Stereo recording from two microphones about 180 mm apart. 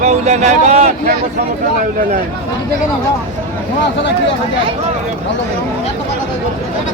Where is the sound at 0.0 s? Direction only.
40° right (ahead or behind).